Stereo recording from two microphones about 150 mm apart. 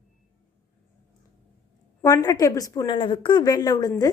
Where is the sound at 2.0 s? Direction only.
25° left (ahead or behind).